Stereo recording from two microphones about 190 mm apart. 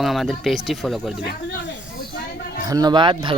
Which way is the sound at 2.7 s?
20° right (ahead or behind).